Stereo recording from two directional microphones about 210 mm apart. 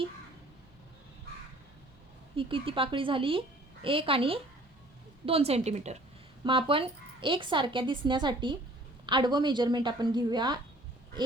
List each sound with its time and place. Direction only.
2.3 s a woman's voice: 25° right (ahead or behind)